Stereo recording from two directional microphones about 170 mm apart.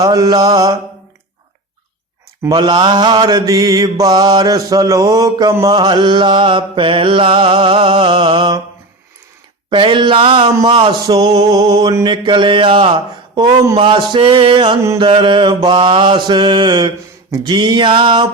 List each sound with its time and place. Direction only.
0.0 s mantra: 25° right (ahead or behind)
2.4 s mantra: 25° right (ahead or behind)
9.6 s mantra: 30° right (ahead or behind)